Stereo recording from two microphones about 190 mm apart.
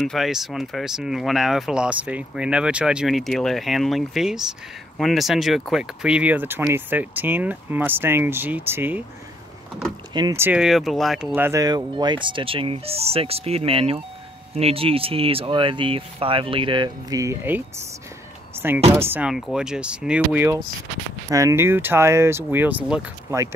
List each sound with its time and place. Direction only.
0.0 s speech: centre (ahead or behind)
10.1 s speech: 15° right (ahead or behind)